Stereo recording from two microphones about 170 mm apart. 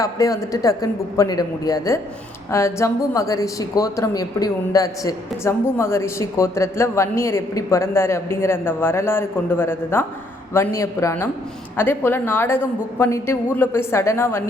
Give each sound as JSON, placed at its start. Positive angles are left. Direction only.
{"t": 0.0, "sound": "a man's voice", "side_deg": 20}